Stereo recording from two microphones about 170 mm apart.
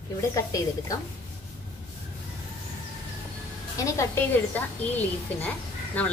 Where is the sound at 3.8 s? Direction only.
15° left (ahead or behind).